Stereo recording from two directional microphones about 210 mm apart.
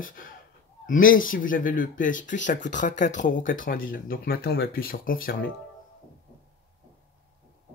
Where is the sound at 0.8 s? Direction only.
40° left (ahead or behind).